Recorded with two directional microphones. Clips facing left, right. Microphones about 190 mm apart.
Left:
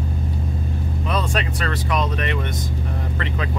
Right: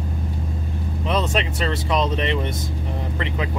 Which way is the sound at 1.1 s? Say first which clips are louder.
Right 2 dB; 25° right (ahead or behind).